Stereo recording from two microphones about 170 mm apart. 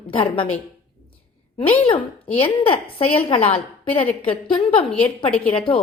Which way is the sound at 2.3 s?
30° left (ahead or behind).